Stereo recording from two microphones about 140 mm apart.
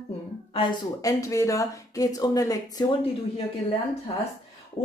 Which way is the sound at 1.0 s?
20° left (ahead or behind).